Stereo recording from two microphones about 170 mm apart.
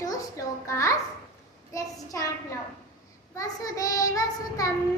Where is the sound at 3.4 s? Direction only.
20° left (ahead or behind).